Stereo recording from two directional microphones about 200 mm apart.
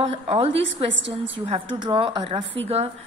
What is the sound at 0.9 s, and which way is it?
Speech, 65° right (ahead or behind).